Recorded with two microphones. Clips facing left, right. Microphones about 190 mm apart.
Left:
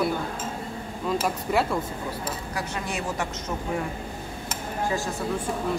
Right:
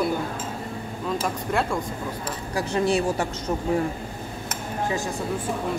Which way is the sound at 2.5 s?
30° right (ahead or behind).